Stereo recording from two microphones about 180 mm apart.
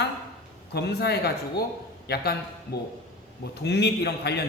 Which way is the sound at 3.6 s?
70° left (ahead or behind).